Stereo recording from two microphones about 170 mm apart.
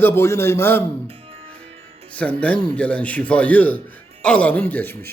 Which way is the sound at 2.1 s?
10° left (ahead or behind).